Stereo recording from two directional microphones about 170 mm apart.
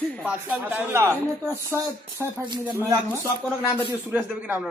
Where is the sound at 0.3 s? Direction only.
10° right (ahead or behind).